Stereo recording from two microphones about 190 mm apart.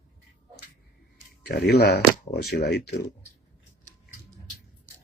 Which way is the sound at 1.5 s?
60° left (ahead or behind).